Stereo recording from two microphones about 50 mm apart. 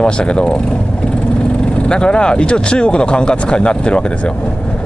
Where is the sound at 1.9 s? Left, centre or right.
Centre.